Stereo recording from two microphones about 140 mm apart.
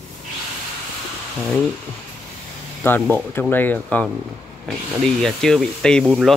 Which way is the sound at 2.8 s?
15° left (ahead or behind).